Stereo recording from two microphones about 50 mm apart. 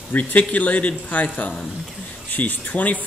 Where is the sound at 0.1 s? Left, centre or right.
Left.